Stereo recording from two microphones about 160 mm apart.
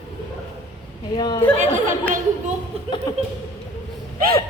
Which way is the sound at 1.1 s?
25° left (ahead or behind).